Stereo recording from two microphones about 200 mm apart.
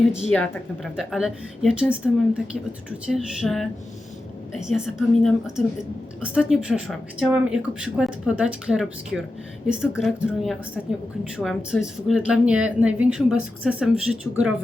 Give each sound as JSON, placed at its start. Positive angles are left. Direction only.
{"t": 0.3, "sound": "speech", "side_deg": 5}